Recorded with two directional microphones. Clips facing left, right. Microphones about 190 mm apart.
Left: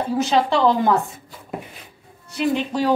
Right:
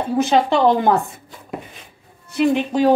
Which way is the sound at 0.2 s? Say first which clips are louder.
Right 3 dB; 55° right (ahead or behind).